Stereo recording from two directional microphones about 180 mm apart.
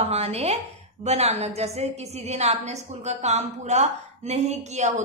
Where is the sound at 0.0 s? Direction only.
35° right (ahead or behind).